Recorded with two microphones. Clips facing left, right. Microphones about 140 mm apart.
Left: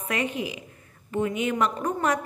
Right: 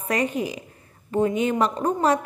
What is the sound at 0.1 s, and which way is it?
A woman's voice, 40° right (ahead or behind).